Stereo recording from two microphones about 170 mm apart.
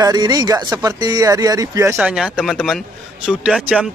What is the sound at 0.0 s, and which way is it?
Speech, 20° right (ahead or behind).